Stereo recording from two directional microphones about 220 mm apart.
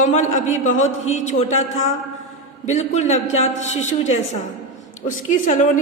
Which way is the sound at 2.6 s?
30° left (ahead or behind).